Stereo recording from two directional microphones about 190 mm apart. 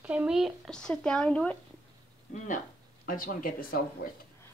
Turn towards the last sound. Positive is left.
turn(degrees=50)  # may be behind; listen again after turning